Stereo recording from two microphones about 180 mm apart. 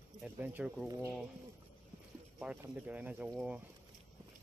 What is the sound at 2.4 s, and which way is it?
Speech, 5° right (ahead or behind).